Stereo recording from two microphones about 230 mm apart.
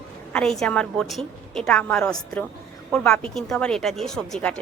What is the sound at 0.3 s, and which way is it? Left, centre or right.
A woman's voice, centre.